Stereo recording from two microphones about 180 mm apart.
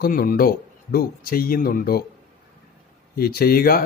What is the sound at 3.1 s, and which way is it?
Speech, 60° left (ahead or behind).